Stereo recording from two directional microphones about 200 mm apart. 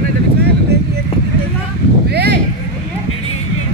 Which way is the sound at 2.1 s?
55° right (ahead or behind).